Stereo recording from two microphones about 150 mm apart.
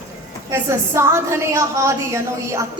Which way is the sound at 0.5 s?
20° right (ahead or behind).